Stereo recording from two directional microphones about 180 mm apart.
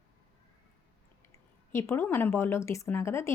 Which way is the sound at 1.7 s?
15° left (ahead or behind).